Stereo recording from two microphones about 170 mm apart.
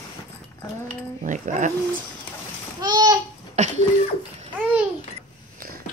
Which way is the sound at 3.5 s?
40° right (ahead or behind).